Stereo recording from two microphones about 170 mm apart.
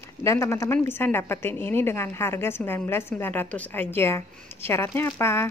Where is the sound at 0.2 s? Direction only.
15° left (ahead or behind).